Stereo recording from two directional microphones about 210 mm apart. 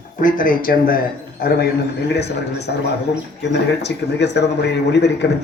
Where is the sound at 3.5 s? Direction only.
55° left (ahead or behind).